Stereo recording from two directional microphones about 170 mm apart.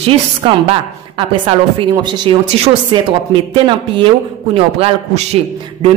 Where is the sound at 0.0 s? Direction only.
30° right (ahead or behind).